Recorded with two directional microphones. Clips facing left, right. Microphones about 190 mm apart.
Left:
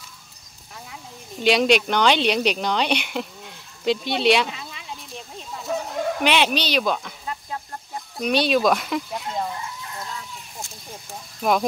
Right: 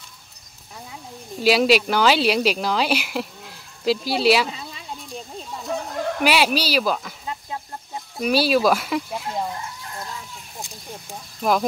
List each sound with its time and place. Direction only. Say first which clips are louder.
1.4 s speech: right 1 dB; 5° right (ahead or behind)
4.5 s a sound: right 2 dB; 30° right (ahead or behind)
5.1 s chicken: right 3 dB; centre (ahead or behind)
7.2 s chicken: even; 15° right (ahead or behind)
8.2 s speech: right 1 dB; 5° right (ahead or behind)
11.4 s speech: even; centre (ahead or behind)